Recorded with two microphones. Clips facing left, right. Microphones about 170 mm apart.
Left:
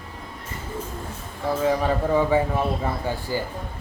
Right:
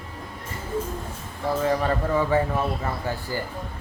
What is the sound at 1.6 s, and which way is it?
Speech, 5° left (ahead or behind).